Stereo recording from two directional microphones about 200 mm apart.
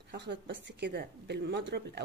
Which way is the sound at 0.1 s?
60° right (ahead or behind).